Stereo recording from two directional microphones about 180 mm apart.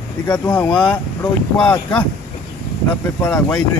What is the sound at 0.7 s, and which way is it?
Speech, 5° left (ahead or behind).